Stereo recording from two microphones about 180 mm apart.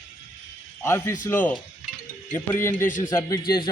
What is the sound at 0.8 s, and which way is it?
A man's voice, 15° left (ahead or behind).